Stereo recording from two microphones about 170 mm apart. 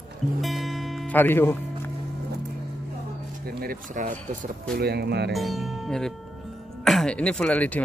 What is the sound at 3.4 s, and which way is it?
Speech, 60° right (ahead or behind).